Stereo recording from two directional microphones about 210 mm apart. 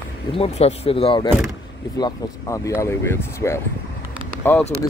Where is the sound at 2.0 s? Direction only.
15° left (ahead or behind).